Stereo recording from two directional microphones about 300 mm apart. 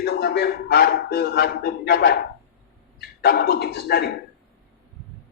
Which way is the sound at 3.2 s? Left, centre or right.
Left.